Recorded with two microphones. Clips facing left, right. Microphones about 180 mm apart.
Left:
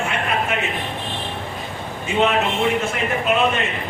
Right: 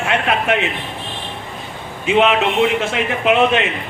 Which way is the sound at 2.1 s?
80° right.